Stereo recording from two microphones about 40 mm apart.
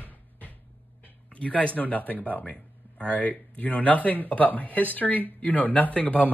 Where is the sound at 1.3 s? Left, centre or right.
Left.